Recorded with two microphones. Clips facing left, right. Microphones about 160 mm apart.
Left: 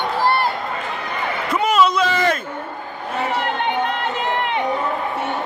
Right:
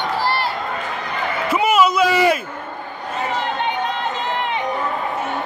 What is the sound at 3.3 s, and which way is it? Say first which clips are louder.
Crowd: right 1 dB; 60° left (ahead or behind).